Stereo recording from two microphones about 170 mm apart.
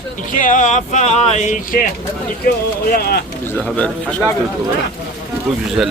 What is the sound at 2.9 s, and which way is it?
Speech, 65° left (ahead or behind).